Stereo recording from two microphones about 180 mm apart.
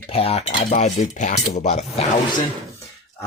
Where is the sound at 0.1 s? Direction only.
35° left (ahead or behind).